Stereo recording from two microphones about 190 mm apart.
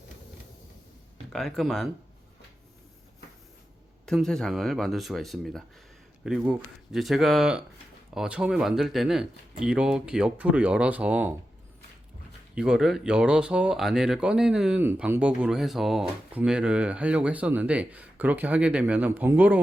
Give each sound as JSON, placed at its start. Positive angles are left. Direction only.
{"t": 1.3, "sound": "speech", "side_deg": 0}
{"t": 4.0, "sound": "speech", "side_deg": 0}
{"t": 12.5, "sound": "speech", "side_deg": -5}